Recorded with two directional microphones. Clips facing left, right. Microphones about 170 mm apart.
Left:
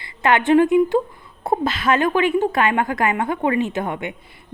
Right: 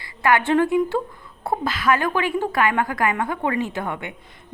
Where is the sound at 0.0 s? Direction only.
25° left (ahead or behind).